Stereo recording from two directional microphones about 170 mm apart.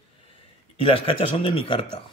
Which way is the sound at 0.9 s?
30° left (ahead or behind).